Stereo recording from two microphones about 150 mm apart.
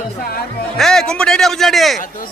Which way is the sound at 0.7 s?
Centre (ahead or behind).